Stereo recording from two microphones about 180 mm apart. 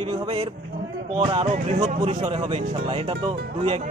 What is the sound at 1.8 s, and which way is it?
Speech, 40° right (ahead or behind).